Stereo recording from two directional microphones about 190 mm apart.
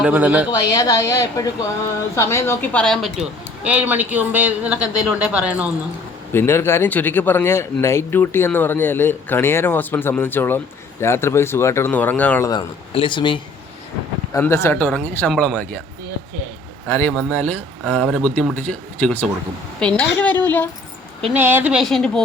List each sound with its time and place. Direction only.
0.0 s speech: 10° right (ahead or behind)
0.5 s speech: 20° left (ahead or behind); by 3.1 s 5° left (ahead or behind)
3.6 s speech: 5° right (ahead or behind)
6.3 s speech: 10° left (ahead or behind)
12.5 s a man's voice: 25° left (ahead or behind)
14.3 s speech: 15° left (ahead or behind)
16.8 s speech: 10° left (ahead or behind)
21.3 s speech: 10° right (ahead or behind)